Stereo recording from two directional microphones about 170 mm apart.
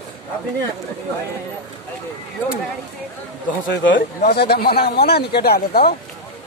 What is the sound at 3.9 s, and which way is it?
Speech, 60° left (ahead or behind).